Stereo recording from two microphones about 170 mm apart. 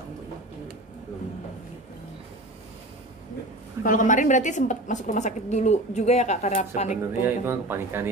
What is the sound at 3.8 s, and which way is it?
A woman's voice, 50° left (ahead or behind).